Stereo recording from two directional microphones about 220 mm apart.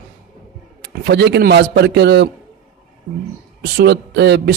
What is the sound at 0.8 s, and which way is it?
A man's voice, 50° right (ahead or behind).